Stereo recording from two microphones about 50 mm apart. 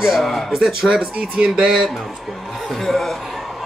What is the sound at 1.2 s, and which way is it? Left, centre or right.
Speech, centre.